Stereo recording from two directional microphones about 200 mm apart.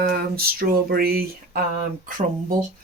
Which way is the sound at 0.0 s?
50° right (ahead or behind).